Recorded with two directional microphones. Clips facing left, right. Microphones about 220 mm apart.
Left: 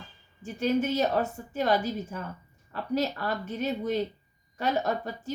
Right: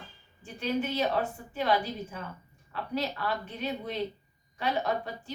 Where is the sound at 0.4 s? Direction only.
45° left (ahead or behind).